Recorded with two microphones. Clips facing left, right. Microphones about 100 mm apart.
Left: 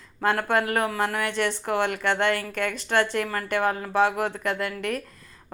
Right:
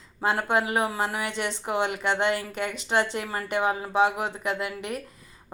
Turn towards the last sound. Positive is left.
turn(degrees=-15)  # may be behind; listen again after turning